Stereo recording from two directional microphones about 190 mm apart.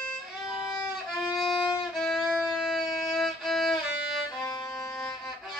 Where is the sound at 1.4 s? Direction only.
Centre (ahead or behind).